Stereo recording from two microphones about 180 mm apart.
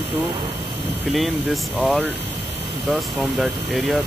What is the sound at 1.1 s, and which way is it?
Speech, centre (ahead or behind).